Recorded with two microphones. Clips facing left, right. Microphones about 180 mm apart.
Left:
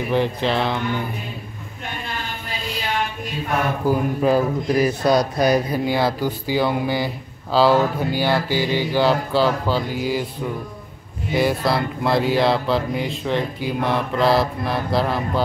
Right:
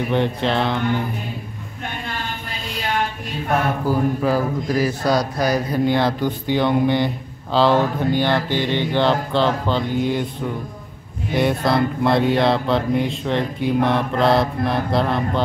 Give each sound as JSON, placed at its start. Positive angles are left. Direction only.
{"t": 0.1, "sound": "speech", "side_deg": 0}
{"t": 3.8, "sound": "a man's voice", "side_deg": 20}
{"t": 5.7, "sound": "speech", "side_deg": 5}
{"t": 7.5, "sound": "mantra", "side_deg": 5}
{"t": 11.3, "sound": "speech", "side_deg": 0}